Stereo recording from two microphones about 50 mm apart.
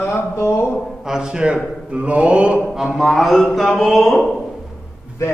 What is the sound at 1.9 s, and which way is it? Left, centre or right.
Mantra, right.